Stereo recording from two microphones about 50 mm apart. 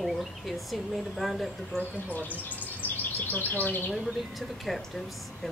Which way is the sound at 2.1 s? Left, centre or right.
Left.